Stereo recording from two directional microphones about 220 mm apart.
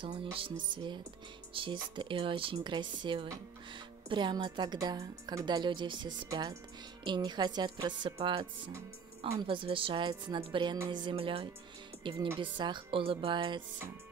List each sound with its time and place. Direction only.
0.0 s a woman's voice: 25° right (ahead or behind)
1.5 s a woman's voice: 25° right (ahead or behind)